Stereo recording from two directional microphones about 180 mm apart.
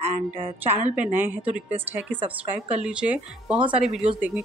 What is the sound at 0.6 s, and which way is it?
A woman's voice, 10° right (ahead or behind).